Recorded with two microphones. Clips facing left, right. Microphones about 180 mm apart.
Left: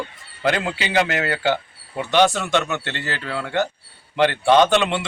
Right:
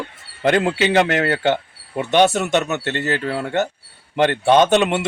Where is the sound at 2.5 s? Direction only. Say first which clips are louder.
Right 3 dB; 40° right (ahead or behind).